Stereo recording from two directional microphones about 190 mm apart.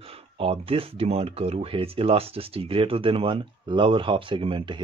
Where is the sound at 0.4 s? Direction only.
30° right (ahead or behind).